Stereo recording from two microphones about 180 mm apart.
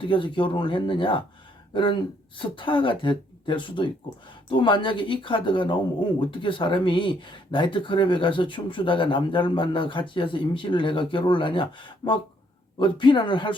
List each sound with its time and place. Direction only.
0.0 s speech: 30° left (ahead or behind)